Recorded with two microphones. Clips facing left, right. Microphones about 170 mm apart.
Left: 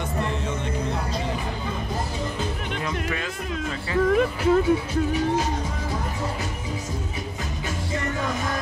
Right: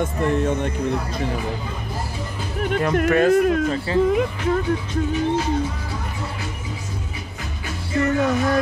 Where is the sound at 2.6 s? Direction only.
50° right (ahead or behind).